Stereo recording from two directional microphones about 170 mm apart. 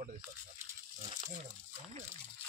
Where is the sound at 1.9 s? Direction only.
40° right (ahead or behind).